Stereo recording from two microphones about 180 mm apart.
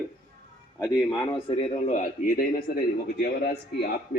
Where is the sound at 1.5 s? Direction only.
35° left (ahead or behind).